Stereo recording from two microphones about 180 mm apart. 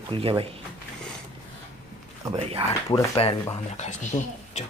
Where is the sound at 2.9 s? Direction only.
30° left (ahead or behind).